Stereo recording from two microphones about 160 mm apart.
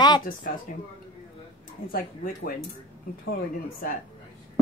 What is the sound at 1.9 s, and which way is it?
Speech, 65° left (ahead or behind).